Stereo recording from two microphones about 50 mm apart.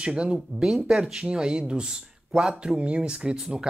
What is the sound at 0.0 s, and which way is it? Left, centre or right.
Speech, centre.